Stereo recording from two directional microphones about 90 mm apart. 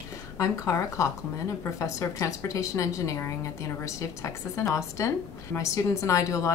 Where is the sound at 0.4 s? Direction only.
35° left (ahead or behind).